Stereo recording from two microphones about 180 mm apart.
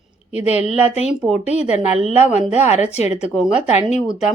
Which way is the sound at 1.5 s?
35° left (ahead or behind).